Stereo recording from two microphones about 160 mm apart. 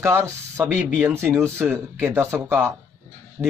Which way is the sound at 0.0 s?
15° right (ahead or behind).